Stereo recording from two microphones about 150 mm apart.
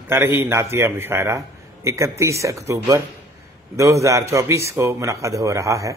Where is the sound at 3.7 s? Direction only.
20° right (ahead or behind).